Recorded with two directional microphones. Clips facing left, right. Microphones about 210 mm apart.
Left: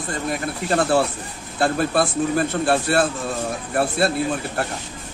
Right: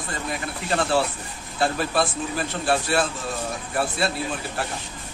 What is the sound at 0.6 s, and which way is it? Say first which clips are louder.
A man's voice: left 4 dB; 50° left (ahead or behind).